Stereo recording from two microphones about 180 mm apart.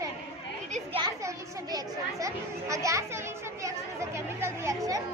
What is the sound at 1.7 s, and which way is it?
A child's voice, 20° right (ahead or behind).